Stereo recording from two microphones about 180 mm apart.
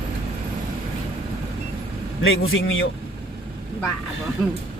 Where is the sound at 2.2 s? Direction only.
90° left.